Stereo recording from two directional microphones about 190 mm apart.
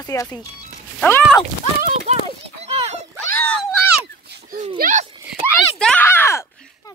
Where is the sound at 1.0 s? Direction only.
5° left (ahead or behind).